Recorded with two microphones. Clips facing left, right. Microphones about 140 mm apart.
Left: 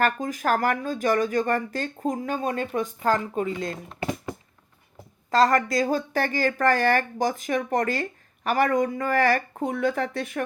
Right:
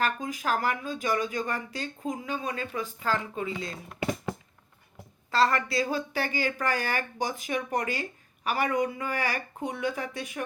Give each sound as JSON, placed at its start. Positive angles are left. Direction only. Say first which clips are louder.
{"t": 0.0, "sound": "speech", "louder": "left 5 dB", "side_deg": 45}
{"t": 5.3, "sound": "speech", "louder": "left 5 dB", "side_deg": 40}